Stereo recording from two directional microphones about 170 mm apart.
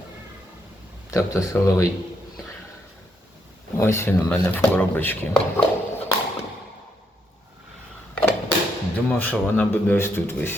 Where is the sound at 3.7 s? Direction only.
15° left (ahead or behind).